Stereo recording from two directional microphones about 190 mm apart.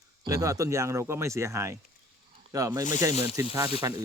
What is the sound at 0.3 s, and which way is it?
Speech, 20° right (ahead or behind).